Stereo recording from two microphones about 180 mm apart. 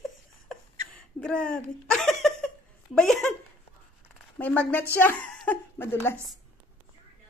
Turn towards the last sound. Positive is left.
turn(degrees=10)  # may be behind; listen again after turning